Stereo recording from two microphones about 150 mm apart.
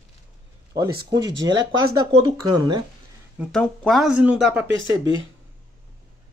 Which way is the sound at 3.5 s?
5° left (ahead or behind).